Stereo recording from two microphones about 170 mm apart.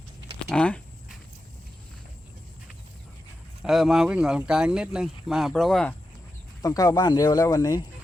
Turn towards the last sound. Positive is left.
turn(degrees=20)  # may be behind; listen again after turning